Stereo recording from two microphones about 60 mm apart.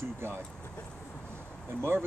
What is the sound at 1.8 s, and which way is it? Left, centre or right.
Speech, right.